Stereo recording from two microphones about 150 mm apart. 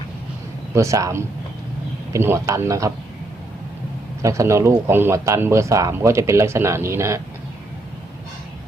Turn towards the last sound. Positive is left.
turn(degrees=-20)  # may be behind; listen again after turning